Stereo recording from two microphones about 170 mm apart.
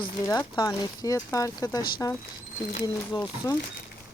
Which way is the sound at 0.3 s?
25° left (ahead or behind).